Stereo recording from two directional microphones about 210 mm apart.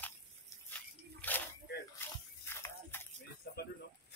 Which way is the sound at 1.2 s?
10° left (ahead or behind).